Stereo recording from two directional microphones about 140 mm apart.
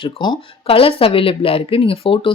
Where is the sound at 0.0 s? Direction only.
35° left (ahead or behind).